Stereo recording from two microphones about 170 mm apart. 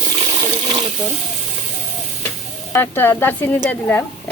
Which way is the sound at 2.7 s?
10° left (ahead or behind).